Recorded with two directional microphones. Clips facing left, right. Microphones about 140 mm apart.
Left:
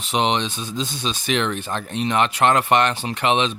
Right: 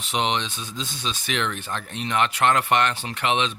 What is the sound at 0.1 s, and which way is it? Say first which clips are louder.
Speech: left 4 dB; 25° left (ahead or behind).